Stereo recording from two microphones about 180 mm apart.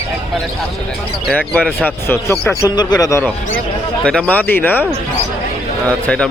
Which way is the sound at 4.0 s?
5° left (ahead or behind).